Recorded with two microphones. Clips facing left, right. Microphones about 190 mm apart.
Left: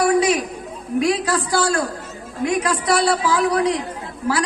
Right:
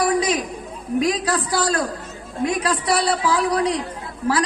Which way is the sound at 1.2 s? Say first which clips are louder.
Left 2 dB; 35° right (ahead or behind).